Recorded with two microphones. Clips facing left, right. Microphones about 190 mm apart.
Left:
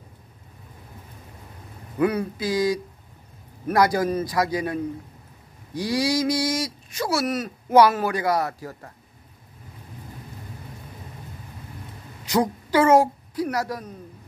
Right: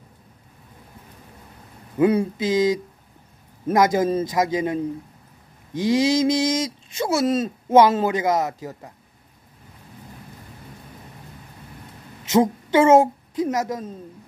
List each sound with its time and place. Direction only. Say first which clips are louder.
2.0 s speech: right 4 dB; 25° right (ahead or behind)
12.3 s a woman's voice: right 4 dB; 25° right (ahead or behind)